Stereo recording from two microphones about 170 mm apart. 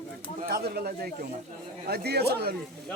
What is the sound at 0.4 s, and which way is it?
Speech, 65° right (ahead or behind).